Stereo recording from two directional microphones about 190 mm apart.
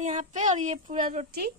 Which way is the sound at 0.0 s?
40° right (ahead or behind).